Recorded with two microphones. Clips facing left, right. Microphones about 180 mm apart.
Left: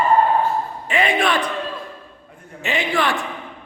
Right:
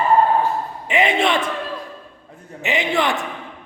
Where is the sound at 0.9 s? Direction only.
20° right (ahead or behind).